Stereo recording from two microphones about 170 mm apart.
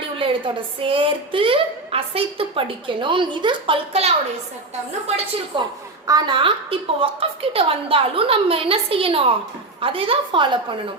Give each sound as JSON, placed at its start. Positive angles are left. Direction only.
{"t": 0.2, "sound": "a woman's voice", "side_deg": -30}
{"t": 6.1, "sound": "a woman's voice", "side_deg": -25}